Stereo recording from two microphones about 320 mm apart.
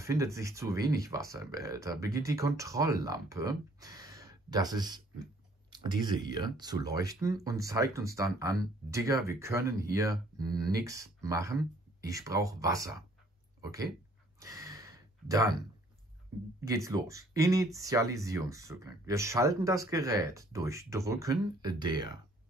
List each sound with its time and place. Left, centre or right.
0.0 s speech: centre
14.4 s a sound: centre
16.6 s speech: centre